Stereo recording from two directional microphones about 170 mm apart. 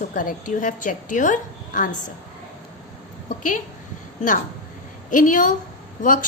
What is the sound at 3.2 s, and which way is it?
Speech, 50° left (ahead or behind).